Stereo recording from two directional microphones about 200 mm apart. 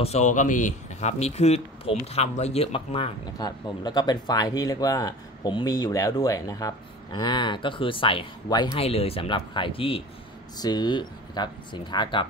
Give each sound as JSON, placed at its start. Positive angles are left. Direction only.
{"t": 0.0, "sound": "speech", "side_deg": 35}